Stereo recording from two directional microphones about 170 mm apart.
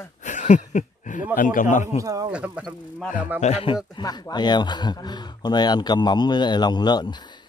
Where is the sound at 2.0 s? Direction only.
20° right (ahead or behind).